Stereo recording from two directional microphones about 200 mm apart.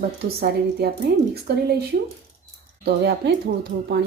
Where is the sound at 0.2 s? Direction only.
50° right (ahead or behind).